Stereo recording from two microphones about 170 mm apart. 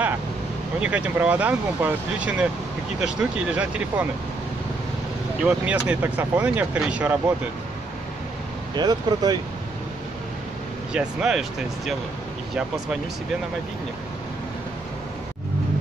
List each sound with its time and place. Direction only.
0.7 s speech: 5° right (ahead or behind)
5.4 s speech: 5° right (ahead or behind)
8.7 s speech: 25° right (ahead or behind)
10.9 s speech: 5° right (ahead or behind)